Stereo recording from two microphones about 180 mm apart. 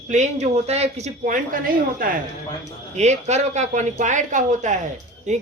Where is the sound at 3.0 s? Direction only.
40° right (ahead or behind).